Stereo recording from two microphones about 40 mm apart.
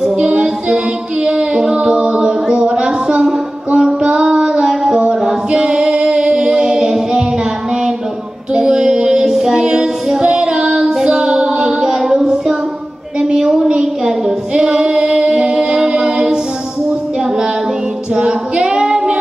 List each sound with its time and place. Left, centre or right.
0.0 s child singing: centre
1.2 s music: centre
2.5 s a sound: right
3.3 s female singing: right
5.5 s singing: right
8.5 s female singing: centre
11.1 s child singing: right
13.2 s a sound: centre
13.7 s female singing: centre
18.1 s female singing: right